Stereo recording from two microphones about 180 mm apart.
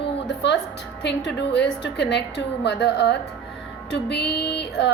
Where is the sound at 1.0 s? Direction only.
70° left (ahead or behind).